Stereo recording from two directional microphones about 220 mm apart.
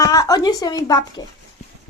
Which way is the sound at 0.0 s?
15° left (ahead or behind).